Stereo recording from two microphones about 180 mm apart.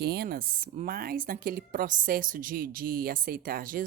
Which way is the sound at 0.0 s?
60° right (ahead or behind).